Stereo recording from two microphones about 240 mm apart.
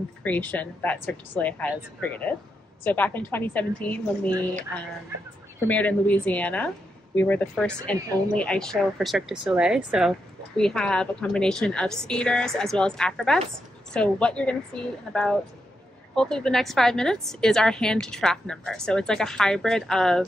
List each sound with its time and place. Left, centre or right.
0.2 s speech: centre
5.7 s a woman's voice: centre
16.2 s a woman's voice: centre